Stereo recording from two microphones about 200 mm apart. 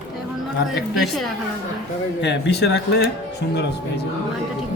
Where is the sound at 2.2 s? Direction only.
60° left (ahead or behind).